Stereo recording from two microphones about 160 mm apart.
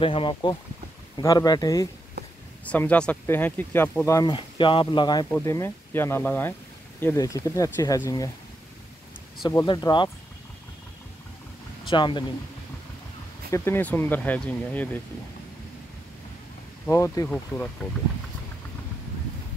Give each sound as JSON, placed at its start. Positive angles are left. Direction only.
{"t": 0.0, "sound": "speech", "side_deg": 30}
{"t": 2.2, "sound": "a sound", "side_deg": -90}
{"t": 2.6, "sound": "speech", "side_deg": 10}
{"t": 9.7, "sound": "speech", "side_deg": 30}
{"t": 11.9, "sound": "speech", "side_deg": 30}
{"t": 13.5, "sound": "speech", "side_deg": 15}
{"t": 16.8, "sound": "speech", "side_deg": 20}